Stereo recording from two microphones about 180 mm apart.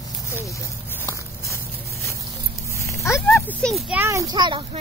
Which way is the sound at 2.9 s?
15° left (ahead or behind).